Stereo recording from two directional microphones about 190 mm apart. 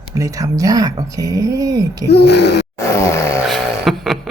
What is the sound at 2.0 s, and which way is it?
Speech, 60° left (ahead or behind).